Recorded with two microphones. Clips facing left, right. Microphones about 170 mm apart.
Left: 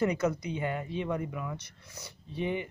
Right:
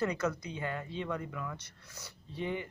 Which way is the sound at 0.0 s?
15° left (ahead or behind).